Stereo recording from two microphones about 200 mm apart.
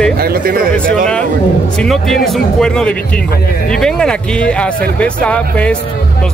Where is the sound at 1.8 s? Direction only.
Centre (ahead or behind).